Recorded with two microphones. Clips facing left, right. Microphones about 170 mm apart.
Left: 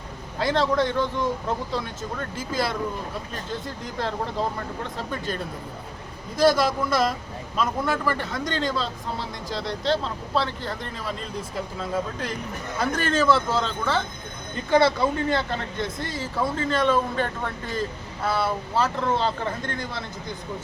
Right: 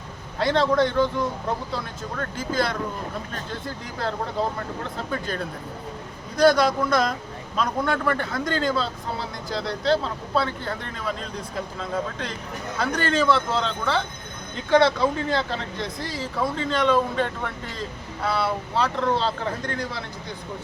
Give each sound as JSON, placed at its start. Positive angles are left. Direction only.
{"t": 0.3, "sound": "speech", "side_deg": 0}
{"t": 4.9, "sound": "speech", "side_deg": 0}
{"t": 12.8, "sound": "speech", "side_deg": 5}